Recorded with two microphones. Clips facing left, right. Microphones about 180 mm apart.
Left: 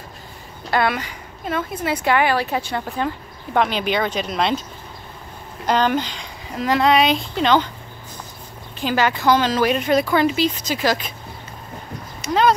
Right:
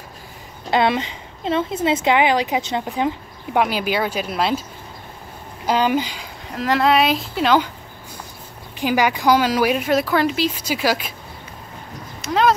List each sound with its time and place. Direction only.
0.7 s a woman's voice: 20° right (ahead or behind); by 4.6 s 5° right (ahead or behind)
5.7 s speech: 10° right (ahead or behind)
8.7 s a woman's voice: 15° right (ahead or behind)
12.2 s a sound: centre (ahead or behind)